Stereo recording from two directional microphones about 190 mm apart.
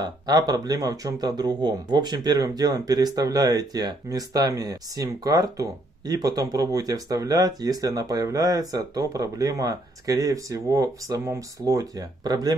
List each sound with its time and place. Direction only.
0.0 s speech: 20° right (ahead or behind)